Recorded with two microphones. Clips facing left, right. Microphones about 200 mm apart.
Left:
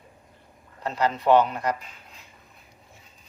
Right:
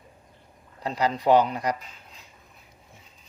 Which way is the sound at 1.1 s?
35° right (ahead or behind).